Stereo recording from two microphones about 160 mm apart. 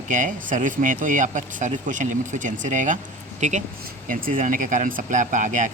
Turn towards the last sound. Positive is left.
turn(degrees=-50)  # may be behind; listen again after turning